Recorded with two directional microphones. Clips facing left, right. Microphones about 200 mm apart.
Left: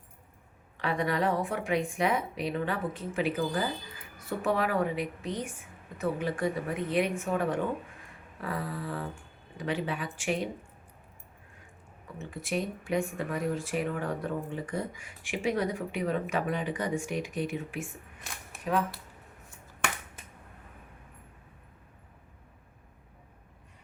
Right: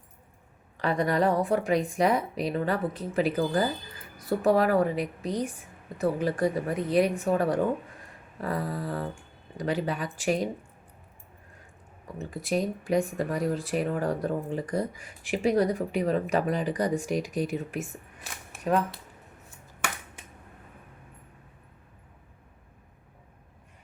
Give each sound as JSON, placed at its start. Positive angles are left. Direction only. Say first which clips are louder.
{"t": 0.8, "sound": "speech", "louder": "right 4 dB", "side_deg": -40}
{"t": 12.2, "sound": "speech", "louder": "right 4 dB", "side_deg": -35}
{"t": 18.5, "sound": "a sound", "louder": "right 5 dB", "side_deg": 0}